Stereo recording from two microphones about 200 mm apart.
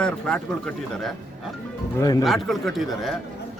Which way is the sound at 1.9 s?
20° left (ahead or behind).